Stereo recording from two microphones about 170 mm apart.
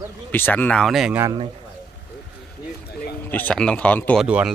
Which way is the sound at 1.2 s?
25° right (ahead or behind).